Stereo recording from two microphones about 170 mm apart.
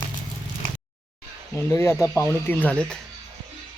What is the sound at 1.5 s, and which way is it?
Speech, 15° left (ahead or behind).